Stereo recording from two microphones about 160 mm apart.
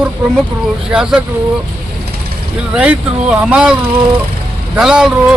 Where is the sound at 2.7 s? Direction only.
5° right (ahead or behind).